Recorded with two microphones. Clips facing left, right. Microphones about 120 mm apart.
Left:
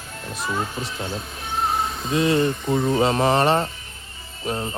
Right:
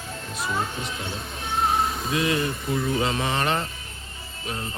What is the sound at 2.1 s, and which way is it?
Speech, 30° left (ahead or behind).